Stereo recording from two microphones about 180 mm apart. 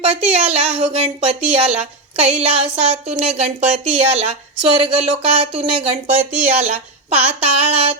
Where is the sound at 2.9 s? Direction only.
35° right (ahead or behind).